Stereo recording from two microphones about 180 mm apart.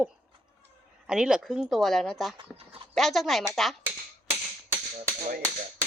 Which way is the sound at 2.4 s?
30° right (ahead or behind).